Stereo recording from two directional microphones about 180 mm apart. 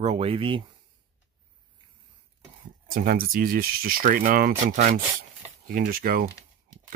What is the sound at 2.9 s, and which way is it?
Speech, 50° right (ahead or behind).